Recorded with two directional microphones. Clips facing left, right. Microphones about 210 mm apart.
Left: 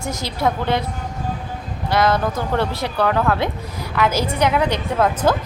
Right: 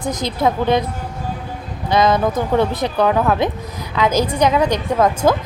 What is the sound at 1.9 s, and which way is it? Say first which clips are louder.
A woman's voice: right 3 dB; 15° right (ahead or behind).